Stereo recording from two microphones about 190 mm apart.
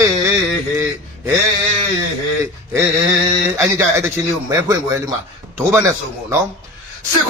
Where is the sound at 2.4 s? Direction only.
15° right (ahead or behind).